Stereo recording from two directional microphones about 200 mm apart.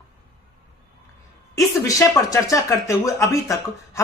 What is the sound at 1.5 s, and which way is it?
Speech, 15° left (ahead or behind).